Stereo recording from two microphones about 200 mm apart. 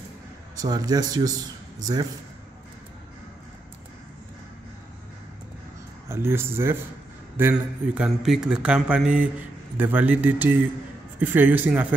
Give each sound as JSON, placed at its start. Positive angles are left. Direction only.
{"t": 0.6, "sound": "a man's voice", "side_deg": -20}
{"t": 6.0, "sound": "a man's voice", "side_deg": -10}